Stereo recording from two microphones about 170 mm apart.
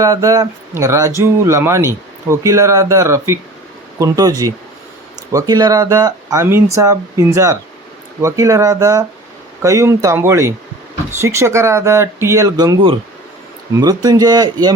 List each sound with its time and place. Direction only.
0.0 s speech: 20° right (ahead or behind)
13.7 s speech: 20° right (ahead or behind)